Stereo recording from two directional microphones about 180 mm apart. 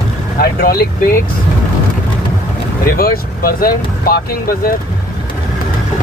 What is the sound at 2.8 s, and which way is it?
Speech, 55° left (ahead or behind).